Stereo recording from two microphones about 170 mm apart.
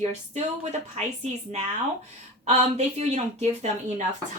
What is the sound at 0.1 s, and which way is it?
A woman's voice, 40° right (ahead or behind).